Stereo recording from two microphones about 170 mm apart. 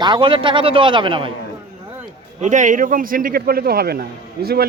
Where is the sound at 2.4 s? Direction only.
45° right (ahead or behind); by 4.0 s 65° right (ahead or behind).